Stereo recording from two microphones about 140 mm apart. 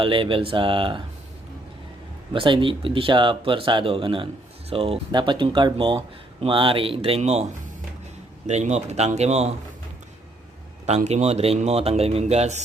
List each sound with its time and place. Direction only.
0.0 s speech: 40° right (ahead or behind)
2.3 s speech: 35° right (ahead or behind)
8.4 s speech: 55° right (ahead or behind)
10.8 s speech: 55° right (ahead or behind)